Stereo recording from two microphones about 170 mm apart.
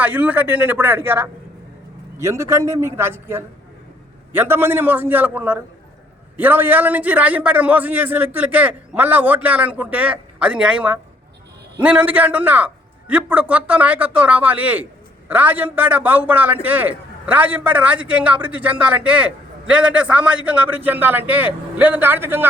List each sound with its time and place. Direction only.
0.0 s a man's voice: 10° right (ahead or behind)